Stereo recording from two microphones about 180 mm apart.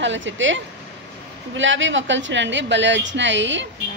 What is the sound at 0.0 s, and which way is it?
Speech, 90° right.